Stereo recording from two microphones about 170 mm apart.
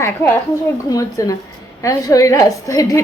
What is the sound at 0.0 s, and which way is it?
A woman's voice, 10° left (ahead or behind).